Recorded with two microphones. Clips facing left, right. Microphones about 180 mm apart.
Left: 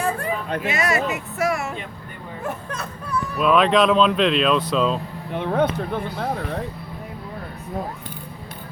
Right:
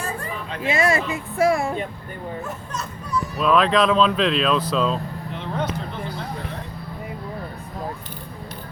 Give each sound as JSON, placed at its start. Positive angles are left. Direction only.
{"t": 0.0, "sound": "a sound", "side_deg": 60}
{"t": 0.6, "sound": "speech", "side_deg": -30}
{"t": 2.4, "sound": "speech", "side_deg": 60}
{"t": 3.4, "sound": "speech", "side_deg": 0}
{"t": 5.3, "sound": "speech", "side_deg": 55}